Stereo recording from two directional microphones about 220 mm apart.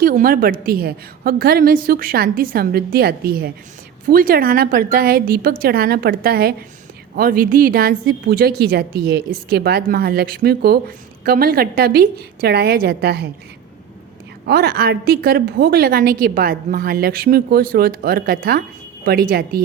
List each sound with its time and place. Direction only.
0.0 s a woman's voice: 40° right (ahead or behind)
14.4 s a woman's voice: 45° right (ahead or behind)